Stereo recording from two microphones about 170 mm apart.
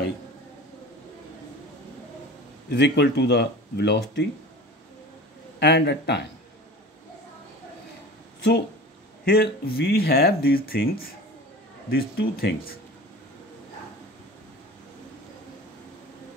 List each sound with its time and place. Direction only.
2.7 s speech: 90° left
5.6 s speech: 90° left
9.2 s speech: 65° left (ahead or behind)